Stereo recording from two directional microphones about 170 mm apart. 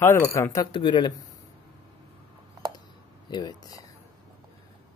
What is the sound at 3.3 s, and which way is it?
Speech, 25° left (ahead or behind).